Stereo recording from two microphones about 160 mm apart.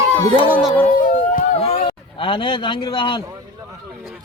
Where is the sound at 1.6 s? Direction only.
40° left (ahead or behind).